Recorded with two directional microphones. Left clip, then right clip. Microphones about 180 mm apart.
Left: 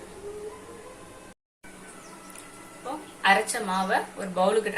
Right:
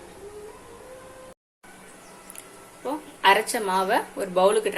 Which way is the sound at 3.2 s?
50° right (ahead or behind).